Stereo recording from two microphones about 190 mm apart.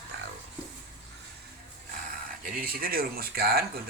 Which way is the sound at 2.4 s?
50° right (ahead or behind).